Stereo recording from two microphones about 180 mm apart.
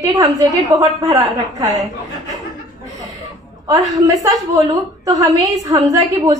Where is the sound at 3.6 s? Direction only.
20° right (ahead or behind).